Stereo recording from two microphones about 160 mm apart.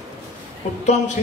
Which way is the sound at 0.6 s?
45° left (ahead or behind).